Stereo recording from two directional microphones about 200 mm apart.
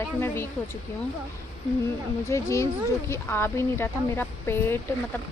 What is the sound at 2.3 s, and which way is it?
Speech, 15° left (ahead or behind).